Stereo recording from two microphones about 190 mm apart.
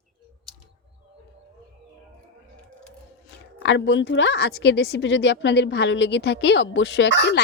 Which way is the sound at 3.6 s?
70° left (ahead or behind).